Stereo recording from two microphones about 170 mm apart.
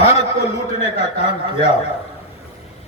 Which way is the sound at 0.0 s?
40° left (ahead or behind).